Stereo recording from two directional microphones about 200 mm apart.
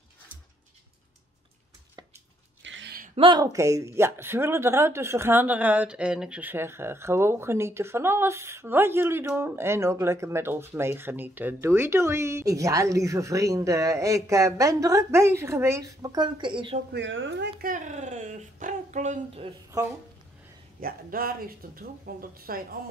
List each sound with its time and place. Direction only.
2.6 s a sound: 65° right (ahead or behind)
3.2 s a woman's voice: 20° right (ahead or behind)
16.9 s speech: 65° right (ahead or behind); by 19.5 s 35° right (ahead or behind)
20.8 s speech: 45° right (ahead or behind)